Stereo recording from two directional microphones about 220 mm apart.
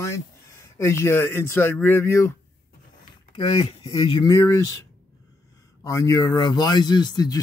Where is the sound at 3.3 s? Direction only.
25° left (ahead or behind).